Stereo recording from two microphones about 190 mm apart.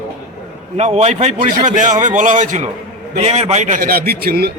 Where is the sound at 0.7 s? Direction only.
35° right (ahead or behind); by 4.5 s 55° right (ahead or behind).